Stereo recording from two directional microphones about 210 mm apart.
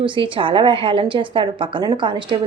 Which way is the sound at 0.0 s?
25° right (ahead or behind).